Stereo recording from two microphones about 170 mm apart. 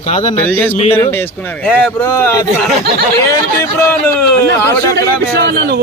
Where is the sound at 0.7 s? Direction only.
40° left (ahead or behind).